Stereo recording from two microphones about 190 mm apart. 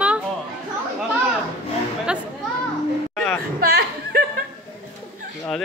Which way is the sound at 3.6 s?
55° right (ahead or behind).